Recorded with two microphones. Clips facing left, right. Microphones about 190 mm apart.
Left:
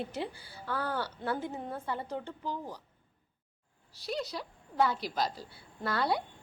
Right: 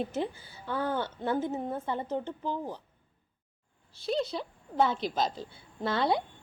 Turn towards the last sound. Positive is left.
turn(degrees=-25)  # may be behind; listen again after turning